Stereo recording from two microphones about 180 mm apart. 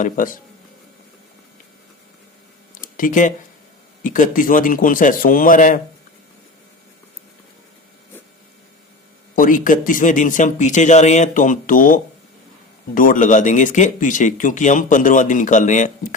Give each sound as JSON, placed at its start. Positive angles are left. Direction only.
{"t": 0.0, "sound": "speech", "side_deg": 45}
{"t": 2.8, "sound": "speech", "side_deg": 45}
{"t": 9.3, "sound": "speech", "side_deg": 50}